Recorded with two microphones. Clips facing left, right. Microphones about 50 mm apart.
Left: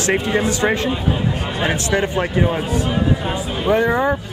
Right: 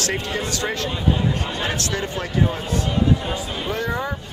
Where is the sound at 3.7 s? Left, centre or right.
Left.